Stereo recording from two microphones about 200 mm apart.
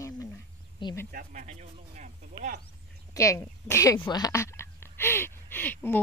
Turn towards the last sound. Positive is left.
turn(degrees=10)  # may be behind; listen again after turning